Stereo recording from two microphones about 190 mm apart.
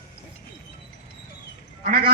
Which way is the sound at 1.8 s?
50° right (ahead or behind).